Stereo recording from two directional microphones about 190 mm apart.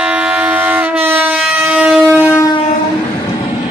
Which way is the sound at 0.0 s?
5° right (ahead or behind).